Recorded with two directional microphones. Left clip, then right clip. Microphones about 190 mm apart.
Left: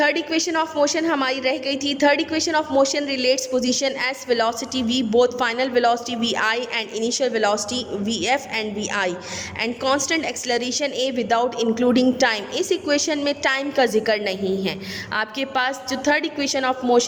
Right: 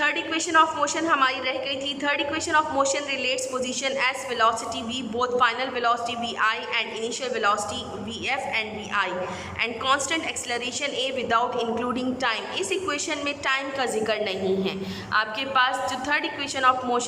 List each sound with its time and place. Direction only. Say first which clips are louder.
0.0 s a woman's voice: left 5 dB; 30° left (ahead or behind)